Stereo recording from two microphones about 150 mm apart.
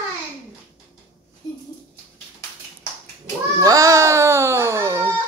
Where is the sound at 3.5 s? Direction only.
20° right (ahead or behind).